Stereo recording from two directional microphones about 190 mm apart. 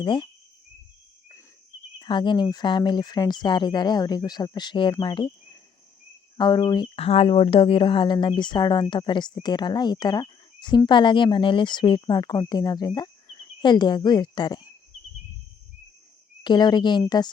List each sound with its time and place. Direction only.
0.0 s speech: 25° left (ahead or behind)
2.0 s speech: 25° left (ahead or behind)
6.3 s speech: 25° left (ahead or behind)
16.4 s speech: 25° left (ahead or behind)